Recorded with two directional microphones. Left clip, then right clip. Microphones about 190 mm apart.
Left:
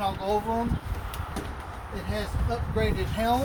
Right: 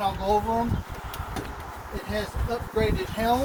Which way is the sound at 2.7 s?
10° right (ahead or behind).